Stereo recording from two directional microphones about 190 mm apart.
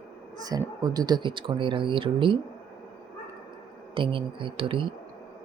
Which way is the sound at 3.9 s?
25° right (ahead or behind).